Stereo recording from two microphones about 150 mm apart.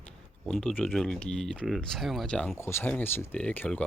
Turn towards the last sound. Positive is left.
turn(degrees=10)  # may be behind; listen again after turning